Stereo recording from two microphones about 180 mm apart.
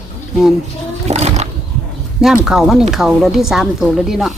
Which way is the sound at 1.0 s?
35° right (ahead or behind).